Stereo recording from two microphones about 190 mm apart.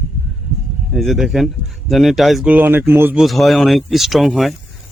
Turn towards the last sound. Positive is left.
turn(degrees=0)  # may be behind; listen again after turning